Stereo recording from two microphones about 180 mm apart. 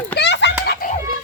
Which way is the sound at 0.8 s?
50° left (ahead or behind).